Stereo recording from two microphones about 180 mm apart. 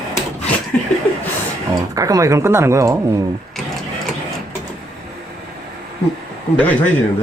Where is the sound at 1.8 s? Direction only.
20° right (ahead or behind).